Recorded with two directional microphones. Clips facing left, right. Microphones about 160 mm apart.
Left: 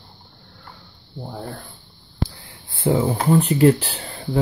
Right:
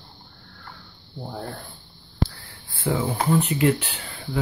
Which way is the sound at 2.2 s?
20° left (ahead or behind).